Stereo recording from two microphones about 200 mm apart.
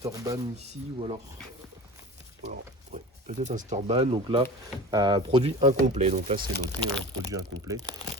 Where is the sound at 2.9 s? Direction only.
30° right (ahead or behind).